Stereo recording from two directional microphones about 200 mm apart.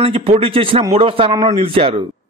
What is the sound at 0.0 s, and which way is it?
A man's voice, 30° right (ahead or behind).